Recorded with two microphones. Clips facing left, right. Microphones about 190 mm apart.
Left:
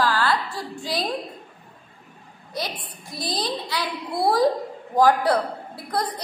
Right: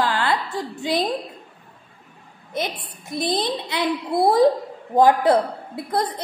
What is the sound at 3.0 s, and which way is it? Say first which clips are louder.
A woman's voice: right 5 dB; 25° right (ahead or behind).